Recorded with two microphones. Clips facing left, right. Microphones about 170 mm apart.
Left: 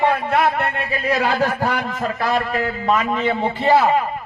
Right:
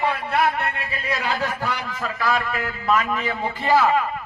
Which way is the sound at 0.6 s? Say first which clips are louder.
Left 5 dB; 35° left (ahead or behind).